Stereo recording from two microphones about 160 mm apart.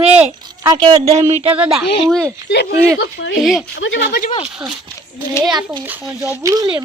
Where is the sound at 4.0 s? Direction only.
90° left.